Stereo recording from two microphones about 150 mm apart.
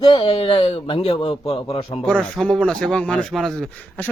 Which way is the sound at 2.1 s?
5° left (ahead or behind).